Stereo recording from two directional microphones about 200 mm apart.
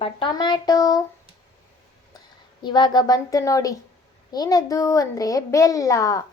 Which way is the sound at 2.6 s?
20° left (ahead or behind).